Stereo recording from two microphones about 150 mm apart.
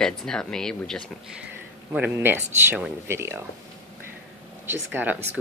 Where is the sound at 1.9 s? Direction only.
10° right (ahead or behind).